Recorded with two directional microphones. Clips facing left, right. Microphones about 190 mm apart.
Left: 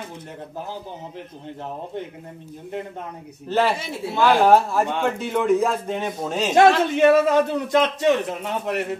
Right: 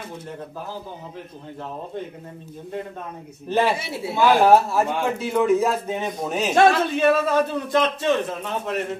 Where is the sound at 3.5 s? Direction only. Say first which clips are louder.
Even; 10° right (ahead or behind).